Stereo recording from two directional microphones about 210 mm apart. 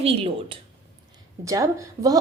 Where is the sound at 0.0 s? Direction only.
30° right (ahead or behind).